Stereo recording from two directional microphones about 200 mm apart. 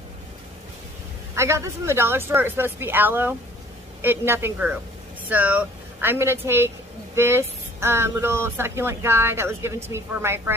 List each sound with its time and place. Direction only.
1.3 s speech: 15° right (ahead or behind)